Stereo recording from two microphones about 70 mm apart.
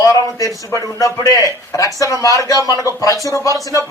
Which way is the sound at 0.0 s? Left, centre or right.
Left.